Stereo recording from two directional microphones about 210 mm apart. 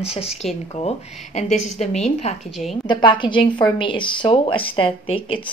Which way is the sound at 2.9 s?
20° left (ahead or behind).